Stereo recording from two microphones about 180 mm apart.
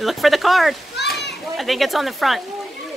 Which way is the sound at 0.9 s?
70° left (ahead or behind).